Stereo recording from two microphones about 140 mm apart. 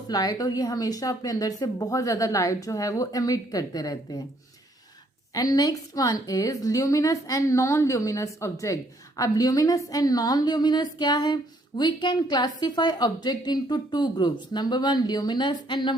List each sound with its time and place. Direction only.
0.1 s a woman's voice: 25° left (ahead or behind)
5.3 s a woman's voice: 25° left (ahead or behind)